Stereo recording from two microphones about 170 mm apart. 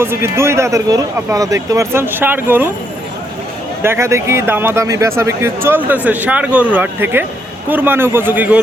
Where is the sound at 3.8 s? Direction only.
15° right (ahead or behind).